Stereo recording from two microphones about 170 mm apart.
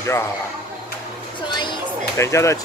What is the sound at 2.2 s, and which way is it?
Speech, 15° left (ahead or behind).